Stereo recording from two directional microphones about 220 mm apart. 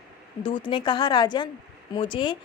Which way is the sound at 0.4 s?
25° left (ahead or behind).